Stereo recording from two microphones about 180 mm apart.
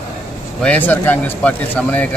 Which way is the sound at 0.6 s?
10° left (ahead or behind).